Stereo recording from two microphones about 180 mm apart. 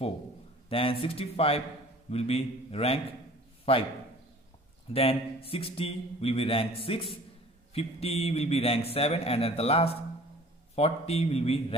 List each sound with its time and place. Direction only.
0.7 s a man's voice: 30° left (ahead or behind)
4.9 s a man's voice: 30° left (ahead or behind)